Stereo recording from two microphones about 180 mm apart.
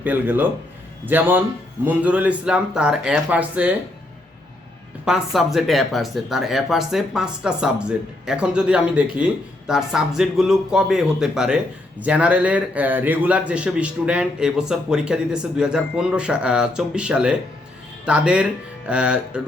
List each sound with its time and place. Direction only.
0.0 s speech: 10° right (ahead or behind)
5.0 s a man's voice: centre (ahead or behind)